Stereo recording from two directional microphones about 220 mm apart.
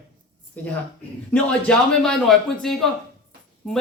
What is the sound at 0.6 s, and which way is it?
Speech, 5° left (ahead or behind).